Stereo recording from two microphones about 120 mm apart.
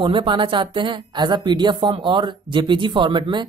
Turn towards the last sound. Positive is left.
turn(degrees=-40)  # may be behind; listen again after turning